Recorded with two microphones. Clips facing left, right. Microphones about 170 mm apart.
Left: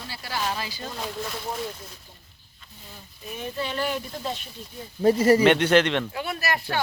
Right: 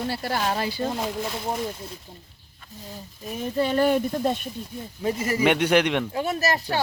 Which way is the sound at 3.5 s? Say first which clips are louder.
Right 9 dB; 50° right (ahead or behind).